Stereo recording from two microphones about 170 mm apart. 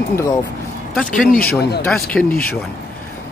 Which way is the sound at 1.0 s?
55° left (ahead or behind).